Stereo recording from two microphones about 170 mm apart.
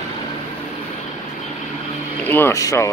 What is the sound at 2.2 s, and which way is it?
Speech, 15° left (ahead or behind).